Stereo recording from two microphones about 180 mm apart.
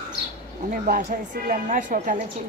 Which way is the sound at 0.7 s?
50° right (ahead or behind).